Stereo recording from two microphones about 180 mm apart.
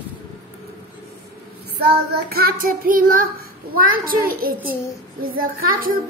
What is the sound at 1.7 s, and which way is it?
A child's voice, 60° right (ahead or behind).